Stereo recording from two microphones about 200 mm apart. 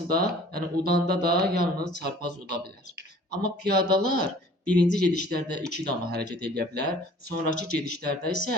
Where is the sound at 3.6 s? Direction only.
55° right (ahead or behind).